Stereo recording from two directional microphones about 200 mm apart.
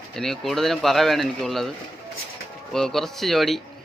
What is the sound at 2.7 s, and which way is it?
Speech, centre (ahead or behind).